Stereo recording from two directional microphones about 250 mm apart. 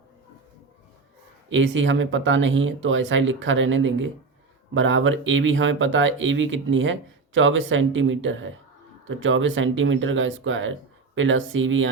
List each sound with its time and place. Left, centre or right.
1.5 s speech: right